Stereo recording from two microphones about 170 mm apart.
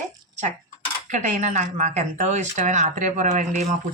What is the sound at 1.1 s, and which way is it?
Speech, 45° right (ahead or behind).